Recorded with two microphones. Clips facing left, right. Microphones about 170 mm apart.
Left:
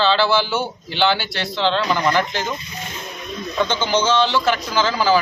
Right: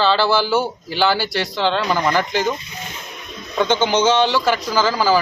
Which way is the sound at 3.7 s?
20° right (ahead or behind).